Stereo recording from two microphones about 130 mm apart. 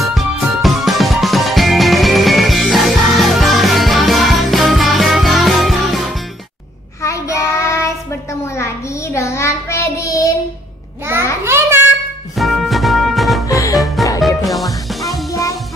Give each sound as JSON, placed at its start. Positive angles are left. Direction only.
{"t": 0.0, "sound": "music", "side_deg": 0}
{"t": 7.0, "sound": "child singing", "side_deg": 20}
{"t": 11.4, "sound": "child singing", "side_deg": -20}
{"t": 12.4, "sound": "music", "side_deg": 0}
{"t": 13.5, "sound": "music", "side_deg": 25}
{"t": 14.2, "sound": "music", "side_deg": 0}